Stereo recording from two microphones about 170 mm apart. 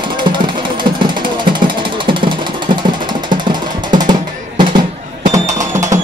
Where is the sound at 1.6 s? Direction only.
30° right (ahead or behind).